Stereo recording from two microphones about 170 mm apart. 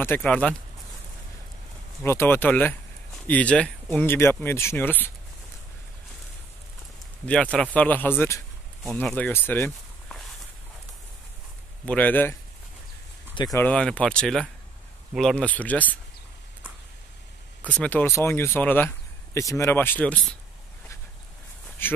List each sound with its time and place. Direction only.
0.0 s speech: 10° left (ahead or behind)
2.0 s speech: 15° left (ahead or behind)
7.2 s speech: 5° left (ahead or behind)
11.8 s speech: 10° left (ahead or behind)
13.3 s speech: 25° left (ahead or behind)
13.6 s speech: 5° left (ahead or behind)
17.6 s speech: 10° left (ahead or behind)
21.8 s speech: 10° left (ahead or behind)